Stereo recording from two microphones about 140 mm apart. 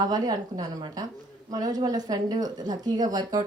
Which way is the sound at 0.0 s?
30° right (ahead or behind).